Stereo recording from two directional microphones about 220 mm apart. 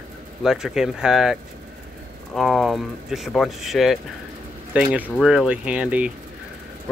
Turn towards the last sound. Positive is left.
turn(degrees=-5)  # may be behind; listen again after turning